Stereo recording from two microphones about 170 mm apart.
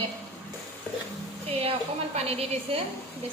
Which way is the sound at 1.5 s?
35° right (ahead or behind).